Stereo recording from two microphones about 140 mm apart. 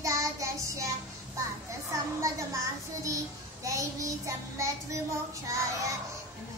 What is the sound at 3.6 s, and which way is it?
Child singing, 25° right (ahead or behind).